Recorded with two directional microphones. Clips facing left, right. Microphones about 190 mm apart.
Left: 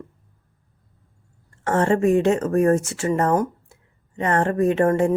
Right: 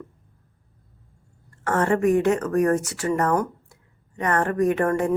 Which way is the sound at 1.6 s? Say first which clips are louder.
Left 2 dB; 25° left (ahead or behind).